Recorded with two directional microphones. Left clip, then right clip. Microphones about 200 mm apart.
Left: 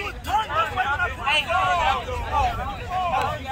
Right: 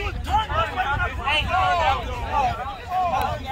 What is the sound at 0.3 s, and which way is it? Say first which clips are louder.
Vehicle: even; centre (ahead or behind).